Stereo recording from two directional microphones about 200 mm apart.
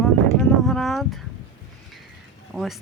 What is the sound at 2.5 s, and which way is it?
Speech, centre (ahead or behind).